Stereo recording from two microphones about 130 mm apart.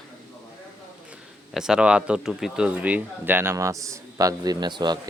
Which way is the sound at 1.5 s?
5° right (ahead or behind).